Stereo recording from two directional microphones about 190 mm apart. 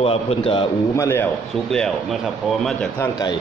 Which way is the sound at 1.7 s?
Centre (ahead or behind).